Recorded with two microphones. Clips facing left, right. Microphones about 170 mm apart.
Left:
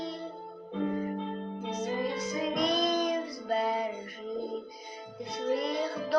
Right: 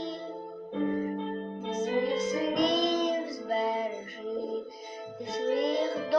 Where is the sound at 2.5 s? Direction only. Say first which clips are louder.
Right 1 dB; centre (ahead or behind).